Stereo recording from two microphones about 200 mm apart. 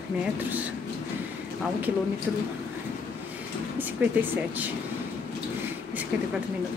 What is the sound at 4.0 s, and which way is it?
Speech, 10° right (ahead or behind).